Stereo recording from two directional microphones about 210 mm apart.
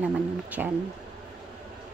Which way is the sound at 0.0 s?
5° right (ahead or behind).